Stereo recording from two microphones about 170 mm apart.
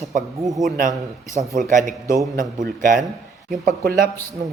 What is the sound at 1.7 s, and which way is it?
A man's voice, 50° right (ahead or behind).